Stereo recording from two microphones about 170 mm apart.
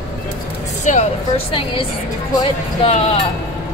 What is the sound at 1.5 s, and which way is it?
Speech, 30° left (ahead or behind).